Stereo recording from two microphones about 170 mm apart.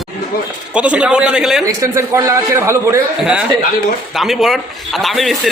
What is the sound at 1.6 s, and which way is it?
A man's voice, 20° right (ahead or behind).